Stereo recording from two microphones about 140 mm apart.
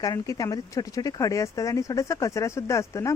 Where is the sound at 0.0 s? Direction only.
25° left (ahead or behind).